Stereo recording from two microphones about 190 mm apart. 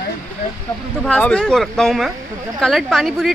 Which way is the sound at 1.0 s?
5° left (ahead or behind).